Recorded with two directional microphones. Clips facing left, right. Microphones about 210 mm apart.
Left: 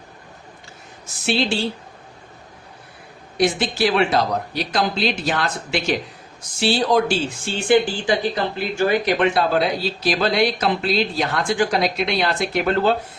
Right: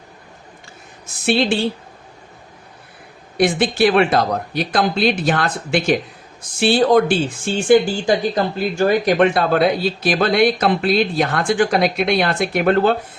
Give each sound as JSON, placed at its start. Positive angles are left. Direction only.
{"t": 1.2, "sound": "speech", "side_deg": -55}
{"t": 3.3, "sound": "speech", "side_deg": -55}